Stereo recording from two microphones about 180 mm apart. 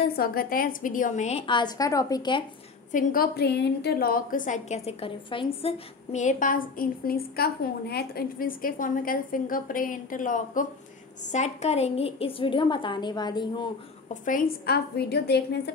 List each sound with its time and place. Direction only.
0.0 s a woman's voice: 55° left (ahead or behind); by 2.4 s 25° left (ahead or behind)
2.9 s a woman's voice: 50° left (ahead or behind); by 13.7 s 25° left (ahead or behind)
14.2 s a woman's voice: 50° left (ahead or behind); by 15.7 s 65° left (ahead or behind)